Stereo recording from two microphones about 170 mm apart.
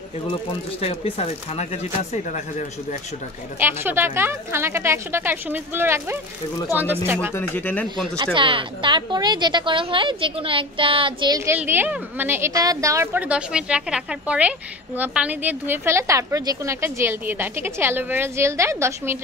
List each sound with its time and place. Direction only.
0.3 s speech: 35° left (ahead or behind)
3.5 s a woman's voice: 15° right (ahead or behind)
7.3 s speech: 10° left (ahead or behind)
8.2 s a woman's voice: 30° right (ahead or behind)